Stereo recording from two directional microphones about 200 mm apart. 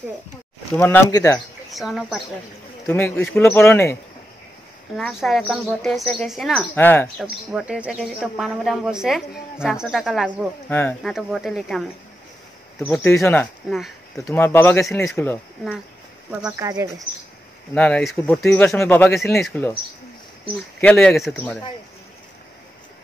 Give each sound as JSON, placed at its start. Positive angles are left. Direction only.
{"t": 0.7, "sound": "speech", "side_deg": 10}
{"t": 1.7, "sound": "speech", "side_deg": 0}
{"t": 2.9, "sound": "speech", "side_deg": 10}
{"t": 4.9, "sound": "speech", "side_deg": 0}
{"t": 6.7, "sound": "speech", "side_deg": 10}
{"t": 7.2, "sound": "speech", "side_deg": -5}
{"t": 14.3, "sound": "speech", "side_deg": 10}
{"t": 16.3, "sound": "speech", "side_deg": -5}
{"t": 16.6, "sound": "speech", "side_deg": -15}
{"t": 17.7, "sound": "speech", "side_deg": 5}
{"t": 20.8, "sound": "speech", "side_deg": 5}